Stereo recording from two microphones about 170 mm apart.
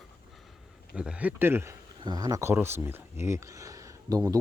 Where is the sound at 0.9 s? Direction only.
5° right (ahead or behind).